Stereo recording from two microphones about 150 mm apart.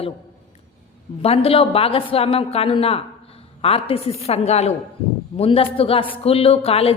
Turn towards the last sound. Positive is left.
turn(degrees=40)  # may be behind; listen again after turning